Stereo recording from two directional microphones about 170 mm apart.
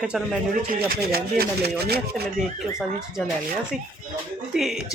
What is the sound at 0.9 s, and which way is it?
Speech, 65° right (ahead or behind).